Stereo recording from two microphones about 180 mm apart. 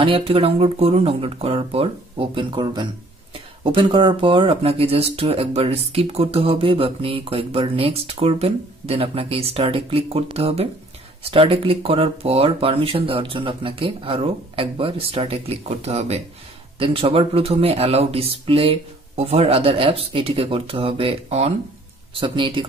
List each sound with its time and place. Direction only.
0.0 s speech: 30° right (ahead or behind)